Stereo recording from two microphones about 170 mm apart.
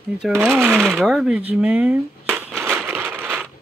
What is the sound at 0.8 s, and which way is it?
Speech, centre (ahead or behind).